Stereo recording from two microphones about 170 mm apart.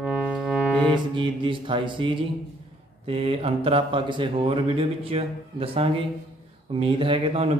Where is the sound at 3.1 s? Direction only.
35° right (ahead or behind).